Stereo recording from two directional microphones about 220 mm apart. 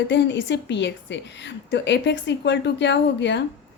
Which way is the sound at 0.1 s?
55° left (ahead or behind).